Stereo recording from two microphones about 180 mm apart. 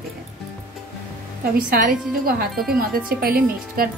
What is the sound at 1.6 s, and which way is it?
A woman's voice, 50° right (ahead or behind).